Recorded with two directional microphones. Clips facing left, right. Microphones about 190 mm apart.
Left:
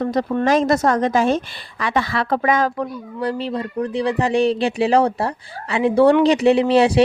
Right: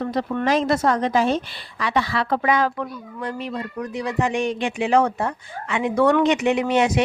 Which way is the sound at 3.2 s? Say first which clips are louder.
Left 5 dB; 35° left (ahead or behind).